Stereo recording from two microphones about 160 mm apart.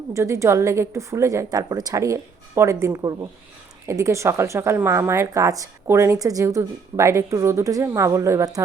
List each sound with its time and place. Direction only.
0.1 s speech: 20° right (ahead or behind)